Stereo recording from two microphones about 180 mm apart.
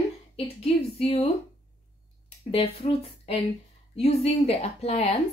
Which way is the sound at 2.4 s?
30° left (ahead or behind).